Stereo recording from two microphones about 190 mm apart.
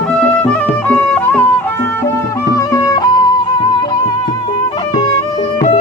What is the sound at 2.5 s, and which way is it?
Music, 15° left (ahead or behind).